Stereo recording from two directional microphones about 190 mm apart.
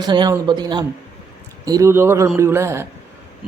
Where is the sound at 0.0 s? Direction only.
20° right (ahead or behind).